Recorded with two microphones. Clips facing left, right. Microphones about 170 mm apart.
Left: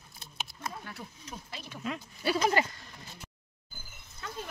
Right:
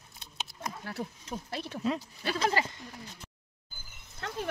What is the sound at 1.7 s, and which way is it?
Speech, 35° right (ahead or behind).